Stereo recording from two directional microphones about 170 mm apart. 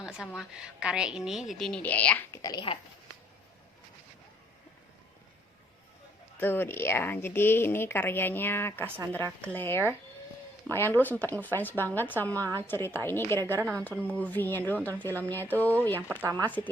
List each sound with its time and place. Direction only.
0.3 s a woman's voice: centre (ahead or behind); by 2.7 s 25° left (ahead or behind)
6.4 s speech: 10° left (ahead or behind)
12.4 s a woman's voice: 20° right (ahead or behind)
12.6 s speech: 15° left (ahead or behind)